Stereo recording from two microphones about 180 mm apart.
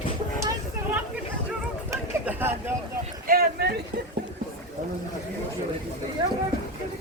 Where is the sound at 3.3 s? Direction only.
55° right (ahead or behind).